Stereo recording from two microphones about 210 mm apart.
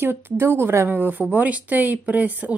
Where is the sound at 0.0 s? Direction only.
10° right (ahead or behind).